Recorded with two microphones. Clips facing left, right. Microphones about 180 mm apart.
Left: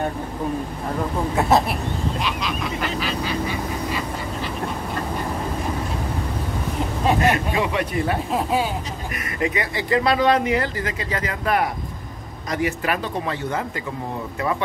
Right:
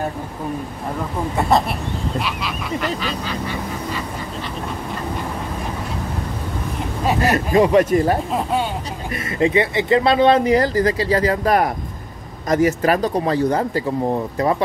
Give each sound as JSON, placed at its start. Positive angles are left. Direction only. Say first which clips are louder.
{"t": 1.3, "sound": "speech", "louder": "right 1 dB", "side_deg": 0}
{"t": 7.2, "sound": "speech", "louder": "right 5 dB", "side_deg": -40}
{"t": 8.3, "sound": "speech", "louder": "right 1 dB", "side_deg": 0}
{"t": 9.1, "sound": "speech", "louder": "right 8 dB", "side_deg": -25}